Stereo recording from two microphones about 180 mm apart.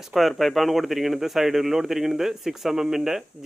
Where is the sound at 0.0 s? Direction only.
Centre (ahead or behind).